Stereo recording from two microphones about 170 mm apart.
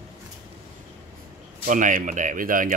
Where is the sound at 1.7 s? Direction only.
50° right (ahead or behind).